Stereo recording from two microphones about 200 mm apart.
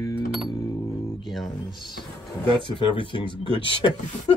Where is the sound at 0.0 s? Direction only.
20° left (ahead or behind).